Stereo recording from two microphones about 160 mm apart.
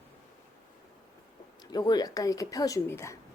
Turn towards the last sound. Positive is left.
turn(degrees=15)  # may be behind; listen again after turning